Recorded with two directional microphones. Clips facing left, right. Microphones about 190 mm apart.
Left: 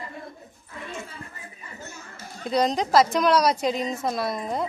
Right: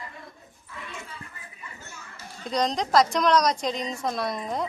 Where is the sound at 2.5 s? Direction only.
5° left (ahead or behind).